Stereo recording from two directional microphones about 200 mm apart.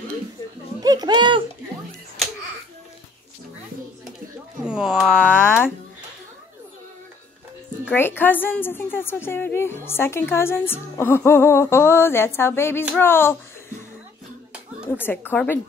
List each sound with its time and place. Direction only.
0.8 s a sound: 20° right (ahead or behind)
4.6 s speech: 5° right (ahead or behind)
8.2 s a woman's voice: 10° left (ahead or behind)
15.0 s a woman's voice: 10° left (ahead or behind)